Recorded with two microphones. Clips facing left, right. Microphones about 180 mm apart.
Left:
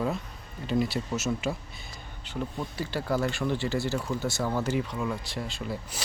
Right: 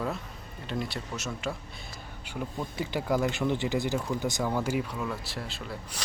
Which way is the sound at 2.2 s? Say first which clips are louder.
Left 1 dB; 10° right (ahead or behind).